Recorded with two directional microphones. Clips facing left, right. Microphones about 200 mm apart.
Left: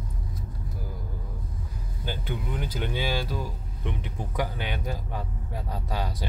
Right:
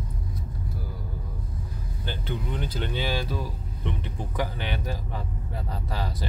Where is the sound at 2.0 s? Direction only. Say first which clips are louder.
Even; 10° left (ahead or behind).